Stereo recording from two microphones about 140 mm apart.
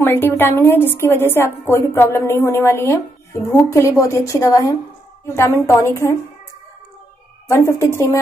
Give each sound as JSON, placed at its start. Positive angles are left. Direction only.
{"t": 0.0, "sound": "a woman's voice", "side_deg": 15}
{"t": 7.4, "sound": "a woman's voice", "side_deg": 20}